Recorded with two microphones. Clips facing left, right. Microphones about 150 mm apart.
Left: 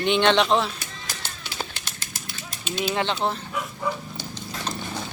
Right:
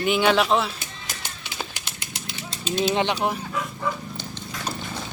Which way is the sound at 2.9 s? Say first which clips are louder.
Right 2 dB; 15° right (ahead or behind).